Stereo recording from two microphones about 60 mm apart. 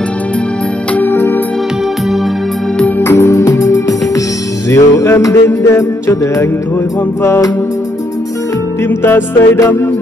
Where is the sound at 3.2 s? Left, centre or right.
Left.